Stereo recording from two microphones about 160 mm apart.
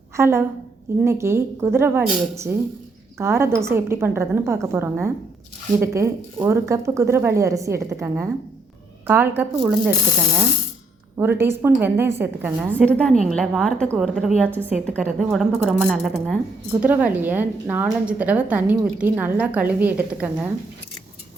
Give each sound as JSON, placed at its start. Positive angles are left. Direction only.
{"t": 0.2, "sound": "a woman's voice", "side_deg": -15}
{"t": 11.2, "sound": "a woman's voice", "side_deg": -15}
{"t": 12.8, "sound": "a woman's voice", "side_deg": 5}